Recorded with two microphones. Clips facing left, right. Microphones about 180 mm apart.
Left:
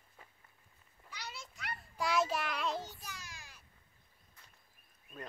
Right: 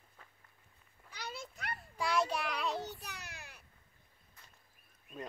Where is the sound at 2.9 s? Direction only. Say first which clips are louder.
Right 2 dB; 65° right (ahead or behind).